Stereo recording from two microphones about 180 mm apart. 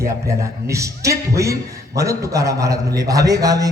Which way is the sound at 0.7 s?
15° right (ahead or behind).